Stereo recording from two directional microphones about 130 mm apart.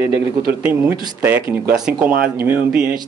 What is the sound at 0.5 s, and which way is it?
Speech, 10° right (ahead or behind).